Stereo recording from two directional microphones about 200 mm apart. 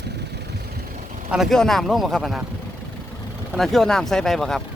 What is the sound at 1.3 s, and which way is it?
Speech, centre (ahead or behind).